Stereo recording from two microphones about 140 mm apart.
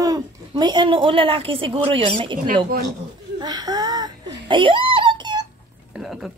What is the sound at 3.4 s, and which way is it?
Whimper, 30° right (ahead or behind).